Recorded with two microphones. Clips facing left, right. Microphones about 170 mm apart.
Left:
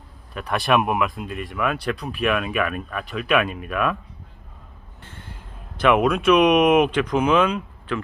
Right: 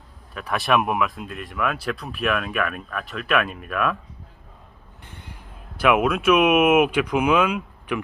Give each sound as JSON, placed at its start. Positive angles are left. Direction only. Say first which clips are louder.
{"t": 0.3, "sound": "speech", "louder": "left 1 dB", "side_deg": 0}
{"t": 5.0, "sound": "music", "louder": "left 1 dB", "side_deg": -15}
{"t": 5.7, "sound": "speech", "louder": "left 1 dB", "side_deg": -5}